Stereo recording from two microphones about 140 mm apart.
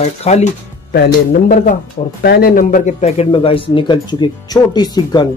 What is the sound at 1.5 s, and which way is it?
A man's voice, 70° left (ahead or behind).